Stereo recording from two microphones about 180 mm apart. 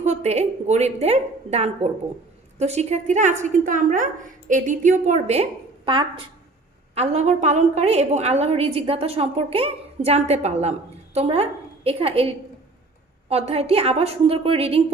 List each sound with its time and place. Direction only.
0.0 s a woman's voice: 40° right (ahead or behind)